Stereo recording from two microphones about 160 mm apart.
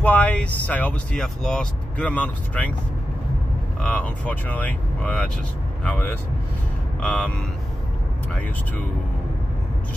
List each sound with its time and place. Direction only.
0.0 s speech: 10° left (ahead or behind)
3.8 s speech: 5° left (ahead or behind)